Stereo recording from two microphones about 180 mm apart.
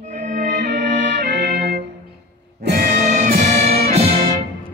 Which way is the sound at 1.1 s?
70° right (ahead or behind).